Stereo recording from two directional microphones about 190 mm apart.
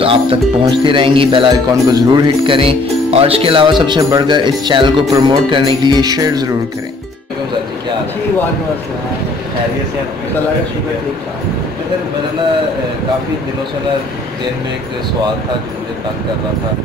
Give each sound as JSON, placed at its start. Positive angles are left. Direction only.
{"t": 0.0, "sound": "speech", "side_deg": -30}